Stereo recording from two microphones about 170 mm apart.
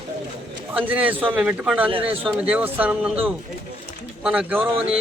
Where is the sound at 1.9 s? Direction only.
30° right (ahead or behind).